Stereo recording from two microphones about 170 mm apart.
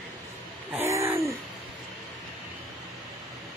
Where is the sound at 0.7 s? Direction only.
15° right (ahead or behind).